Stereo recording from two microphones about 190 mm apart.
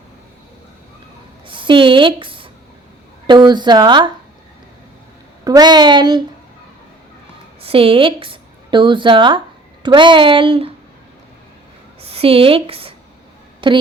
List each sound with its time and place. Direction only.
1.5 s speech: 25° right (ahead or behind)
5.5 s speech: 20° right (ahead or behind)
7.6 s a woman's voice: 30° right (ahead or behind)
11.9 s a woman's voice: 30° right (ahead or behind)